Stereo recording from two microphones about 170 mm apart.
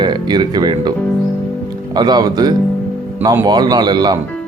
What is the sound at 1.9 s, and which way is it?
Speech, 25° right (ahead or behind).